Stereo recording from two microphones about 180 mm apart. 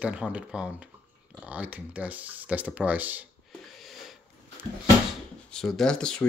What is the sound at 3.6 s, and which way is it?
Sniff, centre (ahead or behind).